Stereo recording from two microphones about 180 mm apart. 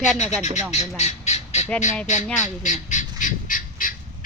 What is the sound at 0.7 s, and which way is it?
Squawk, 40° left (ahead or behind).